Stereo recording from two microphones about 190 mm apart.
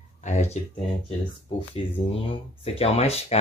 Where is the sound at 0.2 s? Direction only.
40° left (ahead or behind).